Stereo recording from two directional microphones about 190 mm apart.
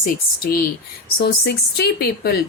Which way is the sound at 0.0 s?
50° left (ahead or behind).